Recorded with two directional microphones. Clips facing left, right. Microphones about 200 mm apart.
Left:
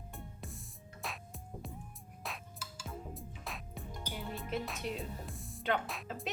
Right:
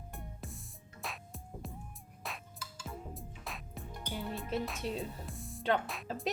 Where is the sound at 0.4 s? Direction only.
Centre (ahead or behind).